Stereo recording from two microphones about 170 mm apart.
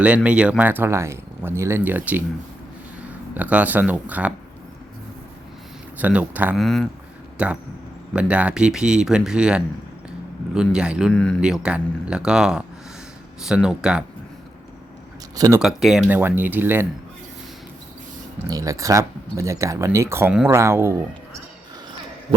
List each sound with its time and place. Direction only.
0.0 s speech: 5° right (ahead or behind)
6.0 s speech: 10° right (ahead or behind)
6.6 s a man's voice: 5° left (ahead or behind)
11.1 s speech: 5° left (ahead or behind)
11.3 s speech: 5° right (ahead or behind)
15.4 s speech: 20° right (ahead or behind)
15.6 s speech: 5° right (ahead or behind)
18.4 s speech: 20° right (ahead or behind)